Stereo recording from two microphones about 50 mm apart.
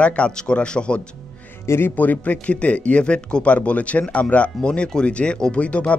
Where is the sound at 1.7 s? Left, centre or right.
Left.